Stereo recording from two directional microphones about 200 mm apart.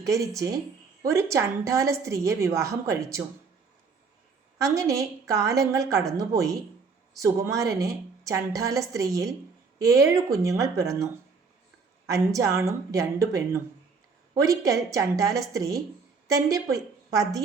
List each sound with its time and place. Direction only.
0.0 s a woman's voice: 15° right (ahead or behind)
4.5 s a woman's voice: 15° right (ahead or behind)